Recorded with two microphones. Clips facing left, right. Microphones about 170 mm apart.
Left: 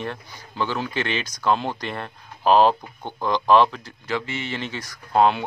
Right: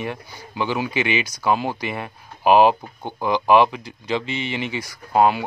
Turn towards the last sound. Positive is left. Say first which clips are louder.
# right 1 dB
turn(degrees=-5)  # may be behind; listen again after turning